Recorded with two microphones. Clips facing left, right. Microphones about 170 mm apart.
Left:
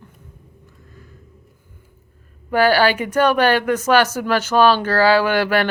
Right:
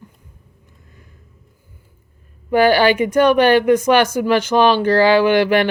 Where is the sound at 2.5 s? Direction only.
10° right (ahead or behind).